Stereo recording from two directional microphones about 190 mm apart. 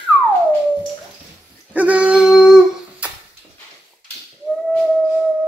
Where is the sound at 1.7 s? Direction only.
5° right (ahead or behind).